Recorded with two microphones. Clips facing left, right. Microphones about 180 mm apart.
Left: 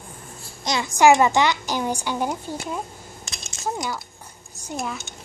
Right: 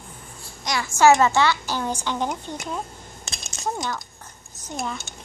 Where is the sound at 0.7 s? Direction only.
20° left (ahead or behind).